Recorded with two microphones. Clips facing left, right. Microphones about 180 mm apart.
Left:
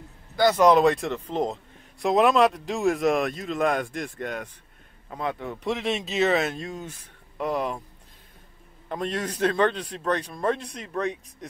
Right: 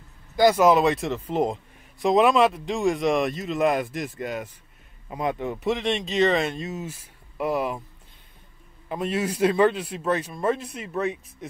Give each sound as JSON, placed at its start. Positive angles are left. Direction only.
{"t": 0.4, "sound": "a man's voice", "side_deg": -10}
{"t": 5.1, "sound": "a man's voice", "side_deg": -15}
{"t": 5.6, "sound": "a man's voice", "side_deg": 0}
{"t": 8.8, "sound": "a man's voice", "side_deg": -5}